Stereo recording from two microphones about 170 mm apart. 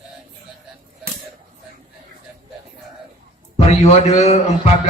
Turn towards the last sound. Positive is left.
turn(degrees=40)  # may be behind; listen again after turning